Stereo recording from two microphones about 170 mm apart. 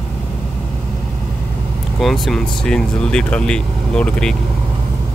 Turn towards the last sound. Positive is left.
turn(degrees=5)  # may be behind; listen again after turning